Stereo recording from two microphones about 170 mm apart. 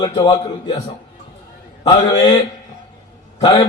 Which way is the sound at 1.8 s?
25° left (ahead or behind).